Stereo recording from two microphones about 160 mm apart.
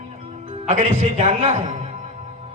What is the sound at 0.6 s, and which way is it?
A man's voice, 45° right (ahead or behind).